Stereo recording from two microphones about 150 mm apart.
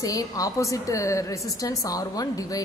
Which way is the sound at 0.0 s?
25° left (ahead or behind).